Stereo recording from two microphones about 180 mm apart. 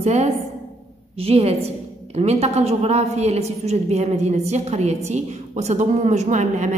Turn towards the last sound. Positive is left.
turn(degrees=-40)  # may be behind; listen again after turning